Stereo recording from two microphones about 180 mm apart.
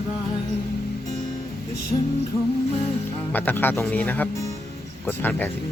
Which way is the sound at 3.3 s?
10° left (ahead or behind).